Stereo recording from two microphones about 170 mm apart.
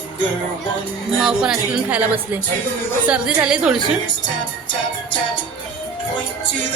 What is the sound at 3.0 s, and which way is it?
Speech, 5° right (ahead or behind).